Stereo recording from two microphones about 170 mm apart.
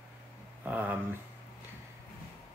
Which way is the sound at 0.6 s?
10° right (ahead or behind).